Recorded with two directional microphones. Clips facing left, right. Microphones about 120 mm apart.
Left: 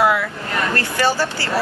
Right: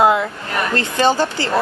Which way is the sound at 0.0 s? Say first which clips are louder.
Right 3 dB; 25° right (ahead or behind).